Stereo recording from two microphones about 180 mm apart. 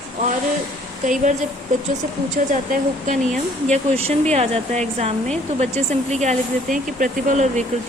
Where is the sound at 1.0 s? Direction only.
45° right (ahead or behind).